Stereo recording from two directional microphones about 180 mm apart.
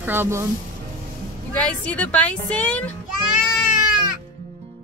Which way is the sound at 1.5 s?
5° left (ahead or behind).